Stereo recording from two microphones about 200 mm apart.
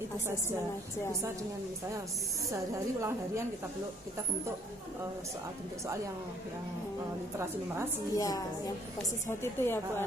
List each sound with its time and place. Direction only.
2.5 s a woman's voice: 15° right (ahead or behind)
7.3 s a woman's voice: 15° right (ahead or behind)
8.1 s a woman's voice: 15° left (ahead or behind)